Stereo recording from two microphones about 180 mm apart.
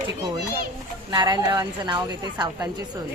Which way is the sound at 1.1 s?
25° right (ahead or behind).